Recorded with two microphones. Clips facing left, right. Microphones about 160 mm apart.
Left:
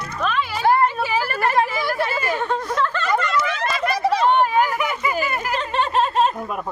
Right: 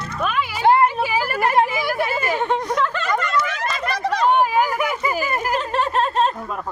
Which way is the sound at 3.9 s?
10° left (ahead or behind).